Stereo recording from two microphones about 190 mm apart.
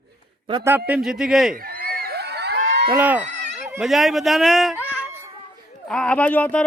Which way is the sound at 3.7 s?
Centre (ahead or behind).